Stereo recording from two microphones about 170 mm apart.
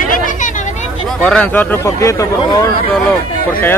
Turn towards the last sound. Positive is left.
turn(degrees=10)  # may be behind; listen again after turning